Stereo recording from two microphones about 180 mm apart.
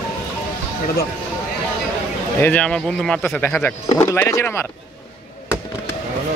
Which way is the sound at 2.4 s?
5° left (ahead or behind).